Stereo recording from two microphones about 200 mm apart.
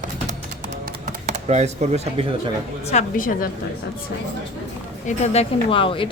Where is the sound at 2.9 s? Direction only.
40° left (ahead or behind).